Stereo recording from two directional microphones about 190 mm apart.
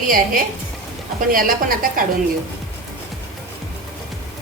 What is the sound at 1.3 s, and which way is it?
Speech, 45° right (ahead or behind).